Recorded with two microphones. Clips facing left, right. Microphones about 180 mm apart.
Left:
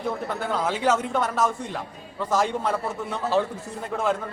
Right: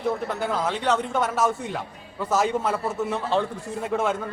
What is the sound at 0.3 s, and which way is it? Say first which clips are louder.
A man's voice: even; centre (ahead or behind).